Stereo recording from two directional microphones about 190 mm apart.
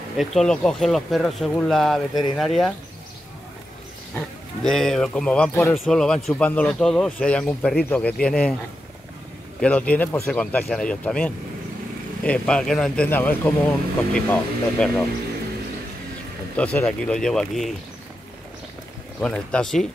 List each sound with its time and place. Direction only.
0.2 s a man's voice: centre (ahead or behind)
4.6 s a man's voice: centre (ahead or behind)
9.6 s a man's voice: 5° left (ahead or behind)
16.5 s a man's voice: 5° left (ahead or behind)
19.2 s a man's voice: 5° left (ahead or behind)